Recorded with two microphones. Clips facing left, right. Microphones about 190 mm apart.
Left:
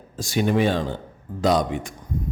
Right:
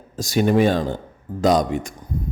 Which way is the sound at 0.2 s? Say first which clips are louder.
Right 4 dB; 40° right (ahead or behind).